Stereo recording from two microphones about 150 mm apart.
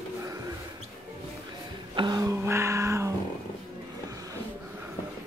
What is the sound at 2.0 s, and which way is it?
Speech, 25° right (ahead or behind).